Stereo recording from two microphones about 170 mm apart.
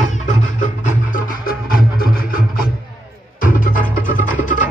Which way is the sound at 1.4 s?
60° left (ahead or behind).